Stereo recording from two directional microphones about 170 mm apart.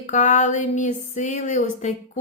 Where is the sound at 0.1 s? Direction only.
45° left (ahead or behind).